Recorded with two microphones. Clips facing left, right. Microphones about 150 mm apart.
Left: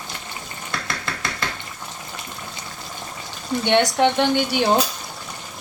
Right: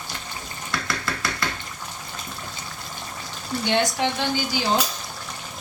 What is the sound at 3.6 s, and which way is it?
Speech, 65° left (ahead or behind).